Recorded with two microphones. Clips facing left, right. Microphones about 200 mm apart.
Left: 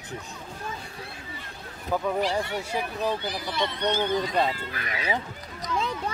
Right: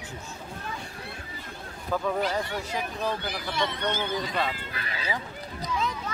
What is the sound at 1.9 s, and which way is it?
Speech, 5° left (ahead or behind).